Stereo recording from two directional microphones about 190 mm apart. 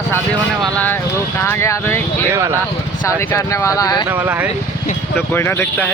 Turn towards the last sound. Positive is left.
turn(degrees=10)  # may be behind; listen again after turning